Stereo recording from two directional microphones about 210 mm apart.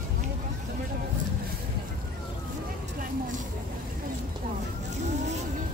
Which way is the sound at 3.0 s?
40° right (ahead or behind).